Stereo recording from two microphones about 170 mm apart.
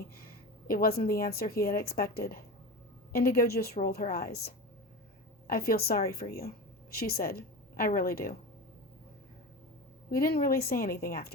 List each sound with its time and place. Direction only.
0.7 s a woman's voice: 60° left (ahead or behind)
10.1 s a woman's voice: 60° left (ahead or behind)